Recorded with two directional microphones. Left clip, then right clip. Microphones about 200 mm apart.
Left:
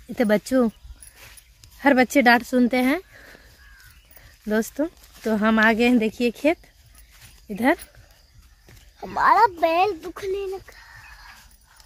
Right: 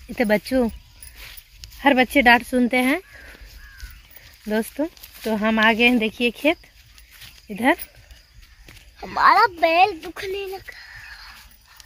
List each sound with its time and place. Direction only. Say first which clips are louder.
0.1 s speech: even; 10° left (ahead or behind)
1.2 s a sound: right 6 dB; centre (ahead or behind)
1.8 s speech: right 1 dB; 15° left (ahead or behind)
4.5 s speech: even; 5° left (ahead or behind)
9.0 s speech: right 2 dB; 25° left (ahead or behind)